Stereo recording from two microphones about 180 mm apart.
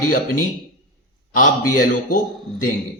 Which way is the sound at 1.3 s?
50° left (ahead or behind).